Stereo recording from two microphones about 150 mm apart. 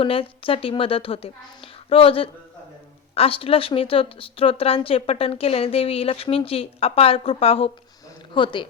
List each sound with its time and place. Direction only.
0.0 s speech: 35° left (ahead or behind)